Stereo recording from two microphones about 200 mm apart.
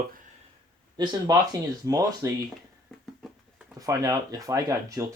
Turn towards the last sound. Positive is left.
turn(degrees=-15)  # may be behind; listen again after turning